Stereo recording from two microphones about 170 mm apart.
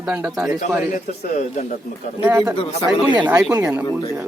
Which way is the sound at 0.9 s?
45° left (ahead or behind).